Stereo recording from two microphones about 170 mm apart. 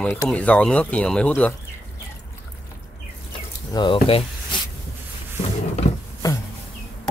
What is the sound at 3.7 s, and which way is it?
Speech, 30° left (ahead or behind).